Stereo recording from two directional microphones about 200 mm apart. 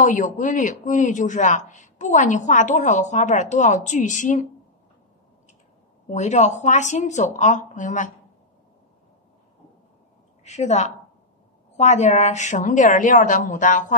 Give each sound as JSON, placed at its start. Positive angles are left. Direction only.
{"t": 0.0, "sound": "speech", "side_deg": 40}
{"t": 6.0, "sound": "speech", "side_deg": 35}
{"t": 10.4, "sound": "a woman's voice", "side_deg": 35}